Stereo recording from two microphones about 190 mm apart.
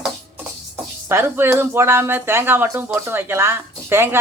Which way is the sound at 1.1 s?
10° right (ahead or behind).